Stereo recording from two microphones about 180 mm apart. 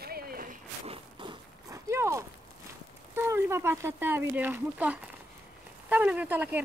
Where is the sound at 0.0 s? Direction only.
55° right (ahead or behind).